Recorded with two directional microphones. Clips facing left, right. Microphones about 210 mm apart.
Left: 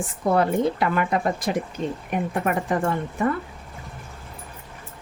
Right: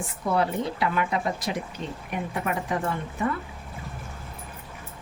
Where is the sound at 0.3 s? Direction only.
50° left (ahead or behind).